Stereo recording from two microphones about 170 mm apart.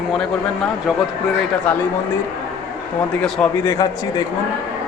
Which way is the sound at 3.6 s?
20° left (ahead or behind).